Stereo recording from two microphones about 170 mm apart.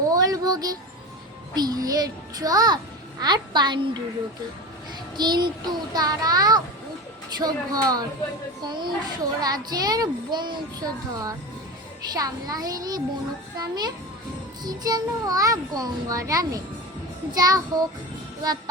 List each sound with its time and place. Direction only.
0.1 s a sound: 20° right (ahead or behind)
1.5 s a child's voice: 25° right (ahead or behind)
5.1 s a child's voice: 25° right (ahead or behind)